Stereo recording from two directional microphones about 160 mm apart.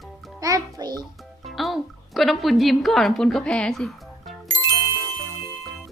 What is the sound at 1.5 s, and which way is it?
A woman's voice, centre (ahead or behind).